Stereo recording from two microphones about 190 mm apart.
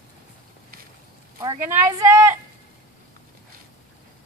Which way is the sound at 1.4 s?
20° right (ahead or behind).